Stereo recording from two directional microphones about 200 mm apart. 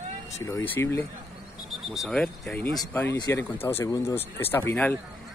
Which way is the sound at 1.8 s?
Centre (ahead or behind).